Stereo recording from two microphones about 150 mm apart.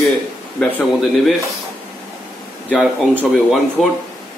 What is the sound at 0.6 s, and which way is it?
Speech, 10° left (ahead or behind).